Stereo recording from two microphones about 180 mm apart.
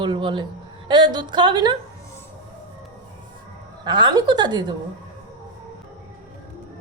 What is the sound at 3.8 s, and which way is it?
Speech, 25° right (ahead or behind).